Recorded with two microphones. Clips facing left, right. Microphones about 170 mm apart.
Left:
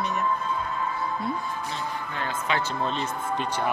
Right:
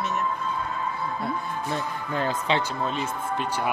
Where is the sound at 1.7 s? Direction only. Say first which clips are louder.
Right 4 dB; 40° right (ahead or behind).